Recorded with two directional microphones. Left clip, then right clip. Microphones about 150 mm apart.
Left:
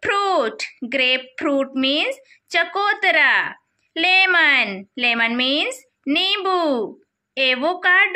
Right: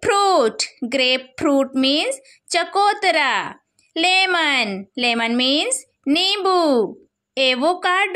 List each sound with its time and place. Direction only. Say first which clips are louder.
0.0 s speech: right 3 dB; 50° right (ahead or behind)